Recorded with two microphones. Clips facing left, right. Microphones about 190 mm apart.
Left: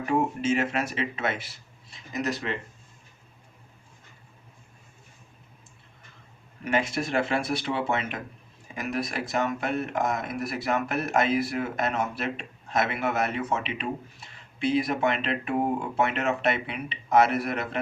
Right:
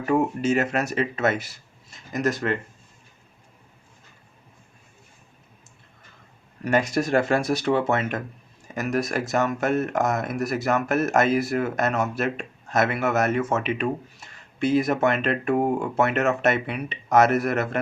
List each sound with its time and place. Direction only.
0.0 s speech: 40° right (ahead or behind)
6.7 s speech: 40° right (ahead or behind)